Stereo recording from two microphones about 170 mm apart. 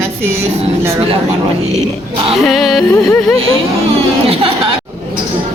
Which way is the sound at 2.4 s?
Centre (ahead or behind).